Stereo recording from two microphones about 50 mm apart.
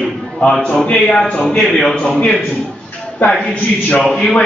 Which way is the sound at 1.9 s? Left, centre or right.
Centre.